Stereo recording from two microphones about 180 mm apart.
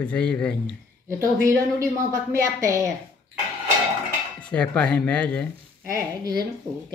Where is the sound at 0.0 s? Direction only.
5° left (ahead or behind).